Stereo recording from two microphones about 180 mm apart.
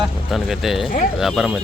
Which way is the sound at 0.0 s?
Centre (ahead or behind).